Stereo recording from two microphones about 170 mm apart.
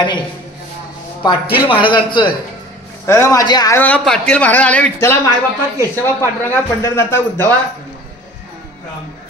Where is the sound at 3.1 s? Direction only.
15° left (ahead or behind).